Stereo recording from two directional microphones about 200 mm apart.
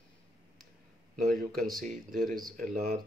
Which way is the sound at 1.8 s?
45° right (ahead or behind).